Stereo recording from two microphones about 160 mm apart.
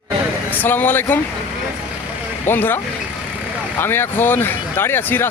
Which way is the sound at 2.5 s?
15° left (ahead or behind).